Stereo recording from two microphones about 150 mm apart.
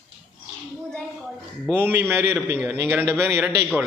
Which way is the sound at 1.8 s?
15° right (ahead or behind).